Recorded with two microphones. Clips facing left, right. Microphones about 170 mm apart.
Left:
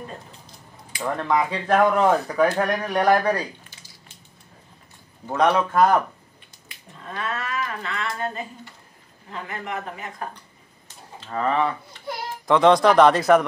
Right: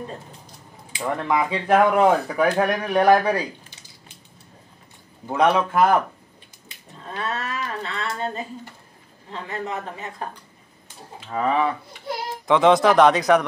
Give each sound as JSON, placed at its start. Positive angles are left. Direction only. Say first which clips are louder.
{"t": 1.0, "sound": "speech", "louder": "even", "side_deg": -10}
{"t": 5.3, "sound": "speech", "louder": "right 1 dB", "side_deg": -10}
{"t": 7.3, "sound": "speech", "louder": "even", "side_deg": -30}
{"t": 9.3, "sound": "a woman's voice", "louder": "right 2 dB", "side_deg": -30}
{"t": 11.1, "sound": "speech", "louder": "right 1 dB", "side_deg": -10}